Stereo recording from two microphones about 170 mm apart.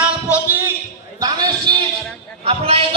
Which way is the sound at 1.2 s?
25° right (ahead or behind).